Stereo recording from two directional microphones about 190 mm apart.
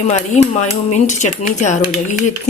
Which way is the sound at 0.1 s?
35° left (ahead or behind).